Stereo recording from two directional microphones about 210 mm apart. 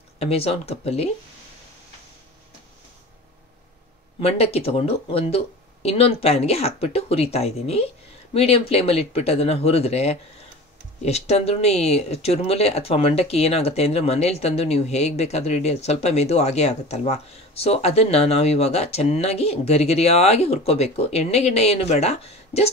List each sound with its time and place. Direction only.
0.2 s speech: 30° left (ahead or behind)
4.2 s speech: 30° left (ahead or behind)